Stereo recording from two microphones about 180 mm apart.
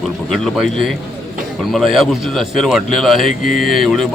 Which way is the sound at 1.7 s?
Centre (ahead or behind).